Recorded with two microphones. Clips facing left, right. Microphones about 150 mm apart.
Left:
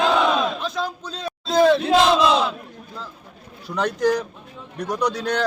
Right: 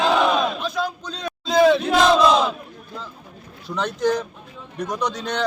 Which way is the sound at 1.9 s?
25° left (ahead or behind).